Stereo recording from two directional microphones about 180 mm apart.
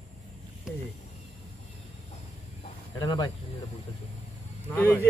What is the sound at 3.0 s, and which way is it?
Speech, 25° left (ahead or behind).